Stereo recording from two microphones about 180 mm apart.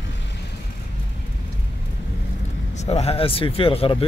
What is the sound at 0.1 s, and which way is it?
Vehicle, 75° left (ahead or behind).